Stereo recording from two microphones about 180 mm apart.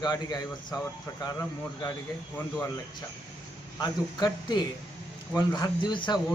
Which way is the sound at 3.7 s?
20° left (ahead or behind).